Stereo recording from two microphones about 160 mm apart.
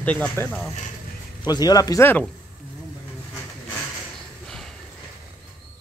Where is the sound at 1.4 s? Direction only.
25° left (ahead or behind).